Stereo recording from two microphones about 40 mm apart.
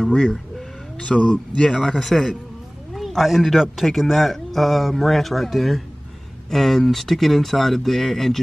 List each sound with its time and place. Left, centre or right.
0.0 s a man's voice: centre
3.1 s speech: centre